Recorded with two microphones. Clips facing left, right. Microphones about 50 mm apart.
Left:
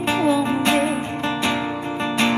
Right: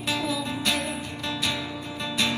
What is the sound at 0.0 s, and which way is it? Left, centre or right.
Music, left.